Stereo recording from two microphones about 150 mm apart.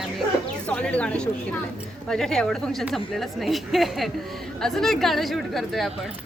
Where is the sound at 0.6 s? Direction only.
5° left (ahead or behind).